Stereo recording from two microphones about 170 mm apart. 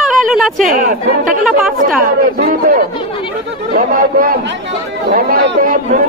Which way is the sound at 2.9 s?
30° left (ahead or behind).